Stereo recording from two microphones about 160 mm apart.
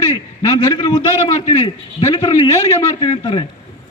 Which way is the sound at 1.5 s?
30° left (ahead or behind).